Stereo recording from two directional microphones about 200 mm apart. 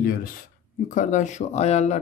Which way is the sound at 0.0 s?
50° left (ahead or behind).